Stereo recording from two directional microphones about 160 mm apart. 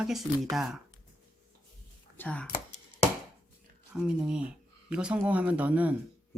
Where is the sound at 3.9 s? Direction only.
5° right (ahead or behind).